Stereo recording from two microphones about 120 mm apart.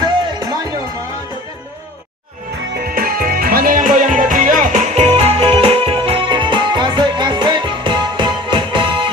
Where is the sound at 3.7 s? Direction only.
90° right.